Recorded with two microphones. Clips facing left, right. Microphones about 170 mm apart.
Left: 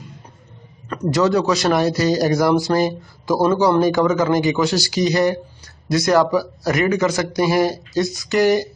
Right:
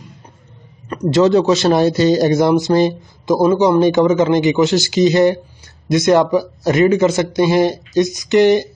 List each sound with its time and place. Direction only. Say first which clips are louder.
1.1 s a man's voice: right 5 dB; 25° right (ahead or behind)